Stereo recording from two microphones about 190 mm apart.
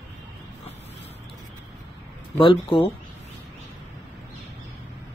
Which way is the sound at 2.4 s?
30° left (ahead or behind).